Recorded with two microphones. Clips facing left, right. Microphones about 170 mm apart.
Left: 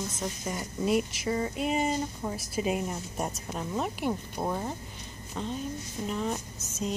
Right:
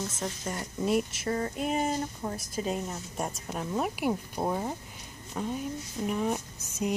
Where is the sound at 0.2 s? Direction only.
5° left (ahead or behind).